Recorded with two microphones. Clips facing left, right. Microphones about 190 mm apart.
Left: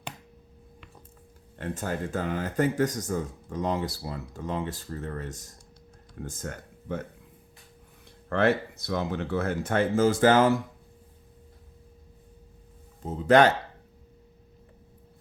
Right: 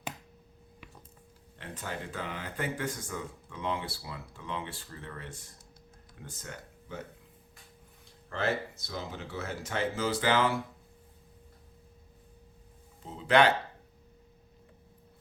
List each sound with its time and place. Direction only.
1.5 s speech: 45° left (ahead or behind)
8.3 s speech: 60° left (ahead or behind); by 10.6 s 45° left (ahead or behind)
13.0 s speech: 45° left (ahead or behind)